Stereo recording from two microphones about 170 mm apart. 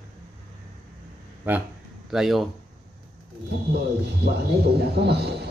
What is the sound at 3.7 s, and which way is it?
A man's voice, 75° right (ahead or behind).